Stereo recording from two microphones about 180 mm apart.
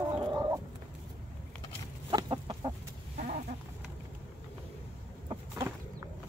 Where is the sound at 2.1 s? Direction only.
25° right (ahead or behind).